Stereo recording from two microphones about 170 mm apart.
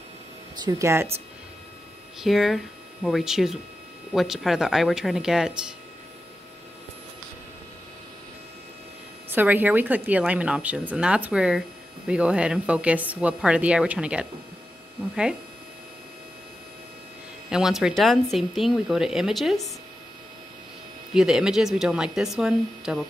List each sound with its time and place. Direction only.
0.7 s a woman's voice: 15° right (ahead or behind)
2.1 s speech: centre (ahead or behind)
9.3 s a woman's voice: 10° right (ahead or behind)
17.5 s speech: 5° right (ahead or behind)
21.1 s speech: 5° right (ahead or behind)